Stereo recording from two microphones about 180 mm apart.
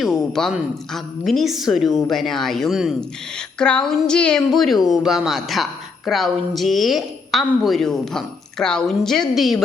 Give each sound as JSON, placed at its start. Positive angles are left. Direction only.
{"t": 0.0, "sound": "a woman's voice", "side_deg": 0}